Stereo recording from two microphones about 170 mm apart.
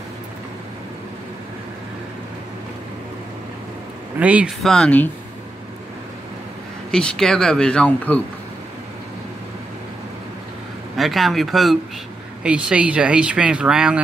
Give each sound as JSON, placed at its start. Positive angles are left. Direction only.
{"t": 4.2, "sound": "speech", "side_deg": -10}
{"t": 4.7, "sound": "speech", "side_deg": 10}
{"t": 6.9, "sound": "speech", "side_deg": 5}
{"t": 11.0, "sound": "speech", "side_deg": 0}